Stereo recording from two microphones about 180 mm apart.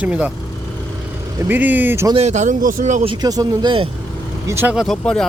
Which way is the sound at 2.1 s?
40° right (ahead or behind).